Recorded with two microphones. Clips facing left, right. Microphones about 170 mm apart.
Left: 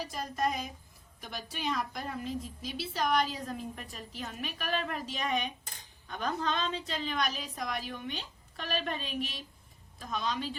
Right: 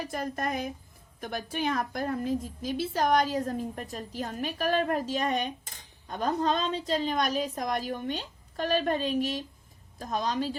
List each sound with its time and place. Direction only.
0.0 s a woman's voice: 55° right (ahead or behind)